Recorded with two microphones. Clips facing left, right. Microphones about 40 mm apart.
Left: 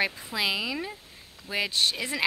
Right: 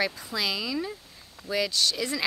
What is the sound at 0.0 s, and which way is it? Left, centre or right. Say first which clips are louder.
Speech: left 1 dB; left.